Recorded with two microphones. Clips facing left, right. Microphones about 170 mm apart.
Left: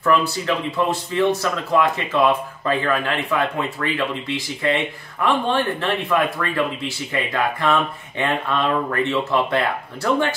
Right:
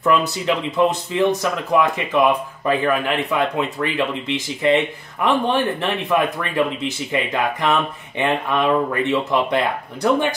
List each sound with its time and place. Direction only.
0.0 s speech: 20° right (ahead or behind)